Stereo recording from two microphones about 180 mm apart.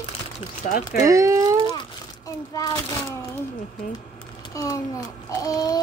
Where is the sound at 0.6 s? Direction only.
50° left (ahead or behind).